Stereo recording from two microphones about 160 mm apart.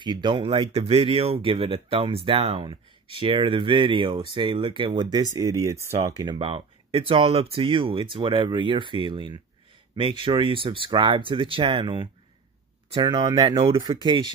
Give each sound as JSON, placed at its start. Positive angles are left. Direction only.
{"t": 0.0, "sound": "speech", "side_deg": -30}